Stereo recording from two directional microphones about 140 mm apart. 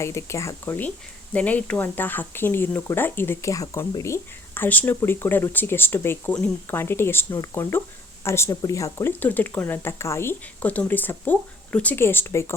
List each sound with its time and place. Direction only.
0.0 s speech: 20° left (ahead or behind)
9.2 s speech: 10° left (ahead or behind)